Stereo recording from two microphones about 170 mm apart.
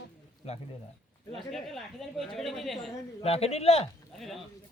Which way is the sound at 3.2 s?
35° left (ahead or behind).